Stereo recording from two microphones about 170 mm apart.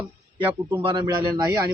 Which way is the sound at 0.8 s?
25° right (ahead or behind).